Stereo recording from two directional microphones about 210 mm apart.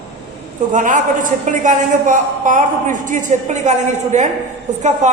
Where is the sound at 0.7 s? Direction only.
40° right (ahead or behind).